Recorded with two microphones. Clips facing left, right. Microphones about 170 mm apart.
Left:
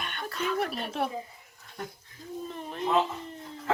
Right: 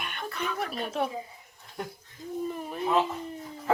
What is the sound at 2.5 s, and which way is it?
Speech, 5° right (ahead or behind).